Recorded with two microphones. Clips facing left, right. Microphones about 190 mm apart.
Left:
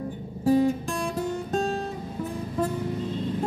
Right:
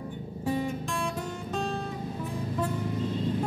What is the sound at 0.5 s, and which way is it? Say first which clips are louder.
Music: left 9 dB; 40° left (ahead or behind).